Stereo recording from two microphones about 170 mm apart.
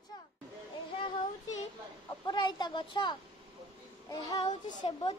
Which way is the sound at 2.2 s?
25° left (ahead or behind).